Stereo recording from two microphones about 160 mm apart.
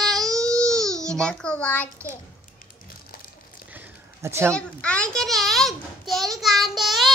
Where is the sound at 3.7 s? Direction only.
15° right (ahead or behind).